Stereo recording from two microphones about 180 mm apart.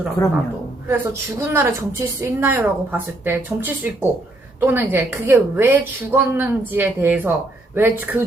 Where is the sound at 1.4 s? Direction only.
15° right (ahead or behind).